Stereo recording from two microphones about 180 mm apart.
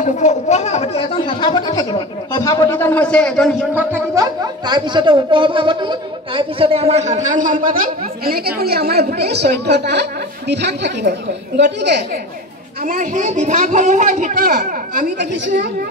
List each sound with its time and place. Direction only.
0.0 s speech: 40° left (ahead or behind); by 3.5 s 5° left (ahead or behind)
3.7 s speech: 15° right (ahead or behind); by 12.0 s 75° right (ahead or behind)
12.8 s a man's voice: 50° right (ahead or behind)